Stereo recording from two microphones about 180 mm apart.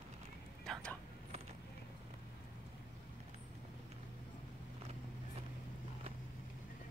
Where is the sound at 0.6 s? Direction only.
5° left (ahead or behind).